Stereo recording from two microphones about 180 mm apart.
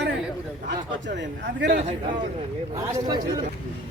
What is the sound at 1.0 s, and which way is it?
Speech, 80° right.